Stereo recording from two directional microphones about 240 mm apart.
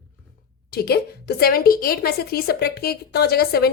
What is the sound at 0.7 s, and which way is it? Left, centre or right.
A woman's voice, left.